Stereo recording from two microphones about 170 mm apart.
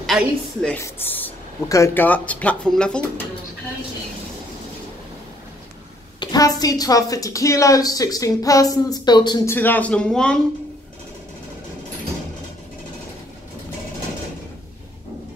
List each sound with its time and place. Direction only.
0.0 s a woman's voice: 5° left (ahead or behind)
6.1 s a woman's voice: 20° left (ahead or behind)
9.5 s speech: 10° left (ahead or behind)